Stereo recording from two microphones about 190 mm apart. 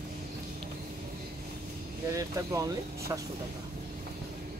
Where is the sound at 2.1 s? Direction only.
15° right (ahead or behind).